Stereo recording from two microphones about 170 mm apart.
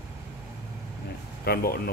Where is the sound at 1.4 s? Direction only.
65° left (ahead or behind).